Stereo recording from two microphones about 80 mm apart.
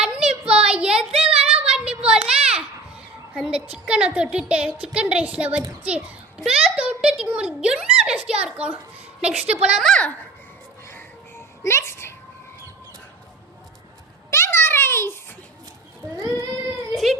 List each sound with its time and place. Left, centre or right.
0.0 s child singing: centre
3.4 s a woman's voice: centre
6.7 s a sound: centre
8.5 s a woman's voice: centre
9.9 s a child's voice: centre
11.6 s music: left
14.3 s a sound: left
16.1 s child singing: right
16.9 s a sound: centre